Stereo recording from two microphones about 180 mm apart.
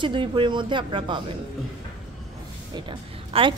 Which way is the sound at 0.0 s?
25° right (ahead or behind).